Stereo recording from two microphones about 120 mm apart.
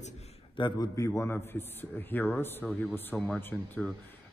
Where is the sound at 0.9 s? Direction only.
25° left (ahead or behind).